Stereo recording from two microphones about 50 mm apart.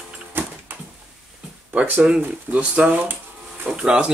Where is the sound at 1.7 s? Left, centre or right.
Right.